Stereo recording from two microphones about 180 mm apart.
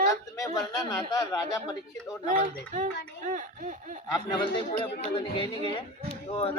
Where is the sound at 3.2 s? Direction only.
45° right (ahead or behind).